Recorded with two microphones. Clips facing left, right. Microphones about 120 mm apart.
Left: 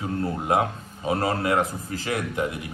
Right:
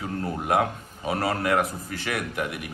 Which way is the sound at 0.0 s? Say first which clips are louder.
Left 2 dB; 25° left (ahead or behind).